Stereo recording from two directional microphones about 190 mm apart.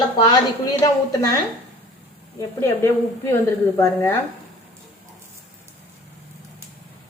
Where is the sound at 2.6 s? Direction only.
10° left (ahead or behind).